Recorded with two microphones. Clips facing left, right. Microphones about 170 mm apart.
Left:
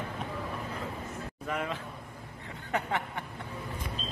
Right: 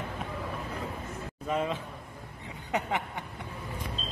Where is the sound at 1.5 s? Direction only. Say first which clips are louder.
Right 4 dB; 20° right (ahead or behind).